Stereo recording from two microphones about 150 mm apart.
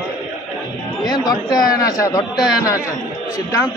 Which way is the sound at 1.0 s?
25° left (ahead or behind).